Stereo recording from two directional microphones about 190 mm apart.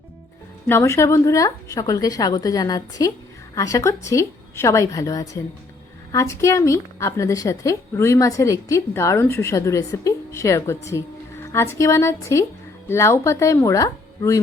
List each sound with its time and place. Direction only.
0.7 s a woman's voice: 15° left (ahead or behind)